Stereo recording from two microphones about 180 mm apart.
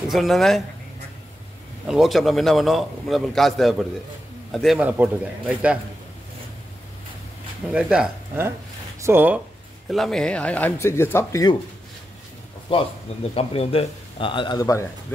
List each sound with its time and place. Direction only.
0.1 s a man's voice: centre (ahead or behind)
1.9 s a man's voice: centre (ahead or behind)
7.7 s a man's voice: 5° right (ahead or behind)
9.8 s speech: centre (ahead or behind)
12.7 s speech: 30° left (ahead or behind)